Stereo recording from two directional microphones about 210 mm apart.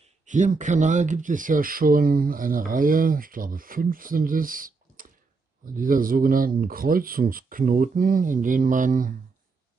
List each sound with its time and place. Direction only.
0.0 s speech: 35° right (ahead or behind)